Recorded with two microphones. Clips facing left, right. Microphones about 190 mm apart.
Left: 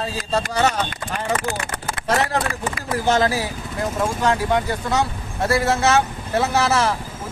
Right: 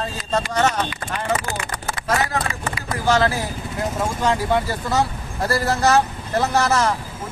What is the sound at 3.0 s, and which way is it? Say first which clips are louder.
Speech: even; 20° left (ahead or behind).